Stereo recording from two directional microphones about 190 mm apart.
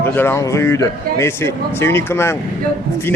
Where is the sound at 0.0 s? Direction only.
10° left (ahead or behind).